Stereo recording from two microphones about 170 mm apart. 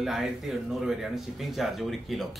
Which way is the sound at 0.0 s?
Centre (ahead or behind).